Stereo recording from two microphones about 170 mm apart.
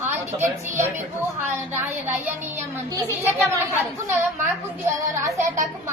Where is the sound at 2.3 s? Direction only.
10° right (ahead or behind).